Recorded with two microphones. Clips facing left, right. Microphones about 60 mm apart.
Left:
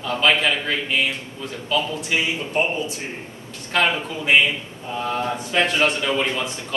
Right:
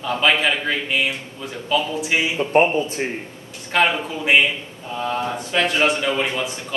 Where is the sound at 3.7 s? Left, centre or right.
Centre.